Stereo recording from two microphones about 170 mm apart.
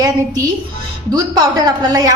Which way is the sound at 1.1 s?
20° right (ahead or behind).